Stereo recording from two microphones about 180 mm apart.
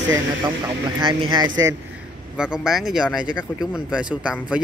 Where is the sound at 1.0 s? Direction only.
25° right (ahead or behind).